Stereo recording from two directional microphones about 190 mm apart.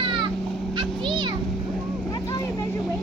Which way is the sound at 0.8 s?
25° right (ahead or behind).